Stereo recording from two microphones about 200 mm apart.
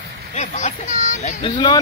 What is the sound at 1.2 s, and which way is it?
Speech, 35° left (ahead or behind).